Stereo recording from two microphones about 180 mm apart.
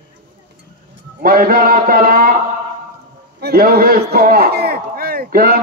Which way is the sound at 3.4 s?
55° right (ahead or behind).